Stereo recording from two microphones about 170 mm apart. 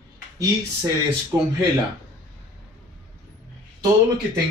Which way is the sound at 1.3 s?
20° right (ahead or behind).